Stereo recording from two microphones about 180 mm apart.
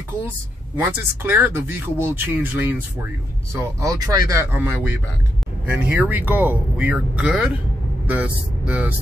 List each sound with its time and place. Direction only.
0.7 s speech: 15° right (ahead or behind)
8.6 s speech: 10° right (ahead or behind)